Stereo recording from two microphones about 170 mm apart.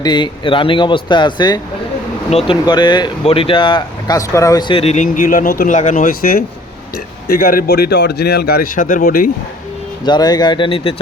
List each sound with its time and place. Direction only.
0.0 s speech: 25° left (ahead or behind)
4.7 s speech: 35° left (ahead or behind)
5.0 s speech: 50° left (ahead or behind)
10.1 s speech: 25° left (ahead or behind)